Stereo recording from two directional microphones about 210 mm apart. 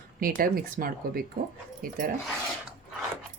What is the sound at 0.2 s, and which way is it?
A woman's voice, 45° right (ahead or behind).